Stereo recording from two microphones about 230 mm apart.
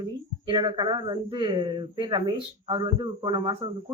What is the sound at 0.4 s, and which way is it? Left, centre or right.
A man's voice, right.